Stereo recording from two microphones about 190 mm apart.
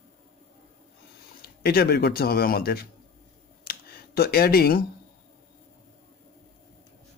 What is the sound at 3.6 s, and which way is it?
Camera, 55° left (ahead or behind).